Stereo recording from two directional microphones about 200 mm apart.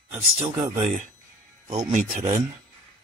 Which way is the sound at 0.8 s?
40° right (ahead or behind).